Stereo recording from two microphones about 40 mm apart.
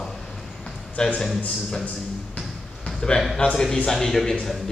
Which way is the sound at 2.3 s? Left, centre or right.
Centre.